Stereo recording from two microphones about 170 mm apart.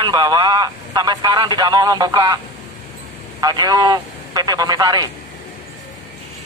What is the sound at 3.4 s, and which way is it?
A man's voice, 25° right (ahead or behind).